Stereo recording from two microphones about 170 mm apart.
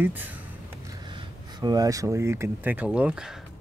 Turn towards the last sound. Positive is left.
turn(degrees=-5)  # may be behind; listen again after turning